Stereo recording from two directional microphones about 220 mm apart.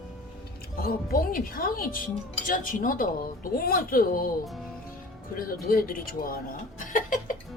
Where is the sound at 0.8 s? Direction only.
40° left (ahead or behind).